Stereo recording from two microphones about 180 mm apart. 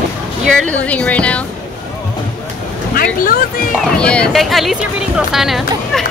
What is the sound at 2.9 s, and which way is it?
Vehicle, 50° left (ahead or behind).